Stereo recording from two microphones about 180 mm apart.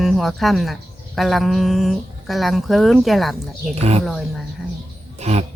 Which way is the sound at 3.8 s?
35° right (ahead or behind).